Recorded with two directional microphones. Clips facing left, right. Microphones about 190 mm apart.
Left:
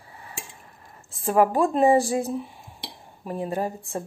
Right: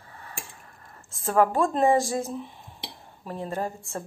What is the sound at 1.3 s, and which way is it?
Speech, 15° left (ahead or behind).